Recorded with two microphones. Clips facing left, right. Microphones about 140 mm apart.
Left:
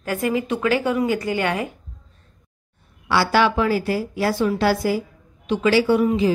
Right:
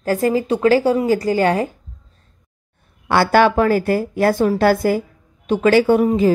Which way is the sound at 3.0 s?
50° right (ahead or behind).